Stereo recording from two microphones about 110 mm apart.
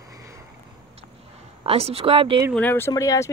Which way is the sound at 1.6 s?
65° right (ahead or behind).